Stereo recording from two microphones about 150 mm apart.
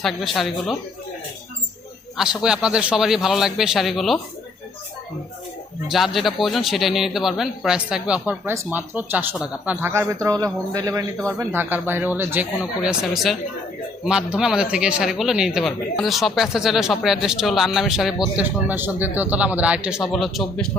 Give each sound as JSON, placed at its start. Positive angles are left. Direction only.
{"t": 0.0, "sound": "a man's voice", "side_deg": 0}
{"t": 2.1, "sound": "a man's voice", "side_deg": -5}
{"t": 5.9, "sound": "a man's voice", "side_deg": 0}
{"t": 18.3, "sound": "speech", "side_deg": -10}